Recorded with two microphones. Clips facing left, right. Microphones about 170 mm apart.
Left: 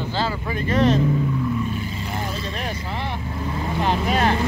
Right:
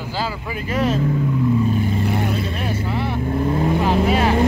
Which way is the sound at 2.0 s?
60° right (ahead or behind).